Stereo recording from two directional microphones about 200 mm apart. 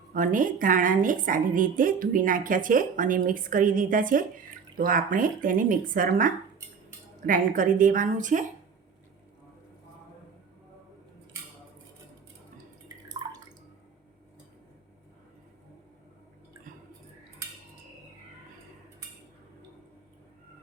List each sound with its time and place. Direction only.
0.1 s a woman's voice: 40° right (ahead or behind)
13.2 s drip: 20° right (ahead or behind)